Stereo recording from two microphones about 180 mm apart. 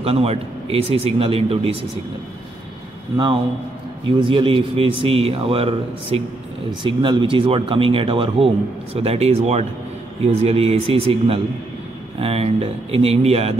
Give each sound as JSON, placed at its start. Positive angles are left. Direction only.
{"t": 0.0, "sound": "speech", "side_deg": -35}
{"t": 4.2, "sound": "speech", "side_deg": -30}